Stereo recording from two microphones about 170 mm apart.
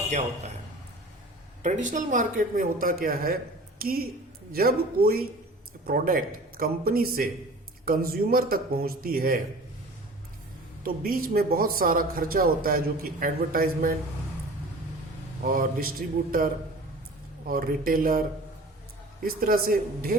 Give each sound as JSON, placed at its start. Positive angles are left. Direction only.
{"t": 0.1, "sound": "a man's voice", "side_deg": -40}
{"t": 1.6, "sound": "speech", "side_deg": -45}
{"t": 10.8, "sound": "speech", "side_deg": -60}
{"t": 15.4, "sound": "speech", "side_deg": -60}